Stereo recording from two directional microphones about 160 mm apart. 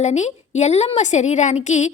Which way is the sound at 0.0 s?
45° left (ahead or behind).